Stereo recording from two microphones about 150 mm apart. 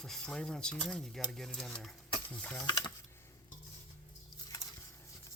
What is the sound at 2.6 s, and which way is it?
Speech, 25° left (ahead or behind).